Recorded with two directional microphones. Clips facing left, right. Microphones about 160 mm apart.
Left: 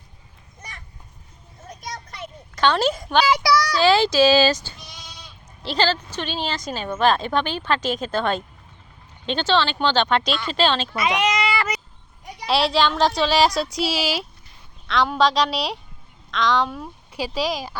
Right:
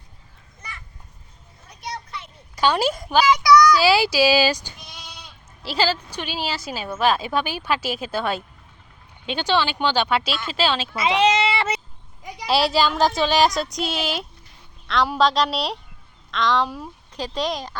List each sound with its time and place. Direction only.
1.6 s a sound: 45° left (ahead or behind)
2.6 s a woman's voice: 10° right (ahead or behind)
3.2 s child singing: 30° left (ahead or behind)
3.8 s a woman's voice: 10° right (ahead or behind)
4.8 s sheep: 60° right (ahead or behind)
5.6 s a woman's voice: 10° right (ahead or behind)
10.9 s a sound: 25° right (ahead or behind)
12.5 s speech: centre (ahead or behind)